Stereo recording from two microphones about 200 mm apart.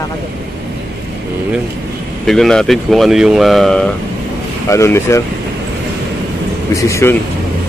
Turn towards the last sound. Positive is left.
turn(degrees=15)  # may be behind; listen again after turning